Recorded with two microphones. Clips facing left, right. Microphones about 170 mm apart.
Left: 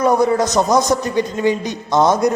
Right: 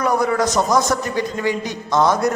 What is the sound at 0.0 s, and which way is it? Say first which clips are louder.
A man's voice: left 4 dB; 25° left (ahead or behind).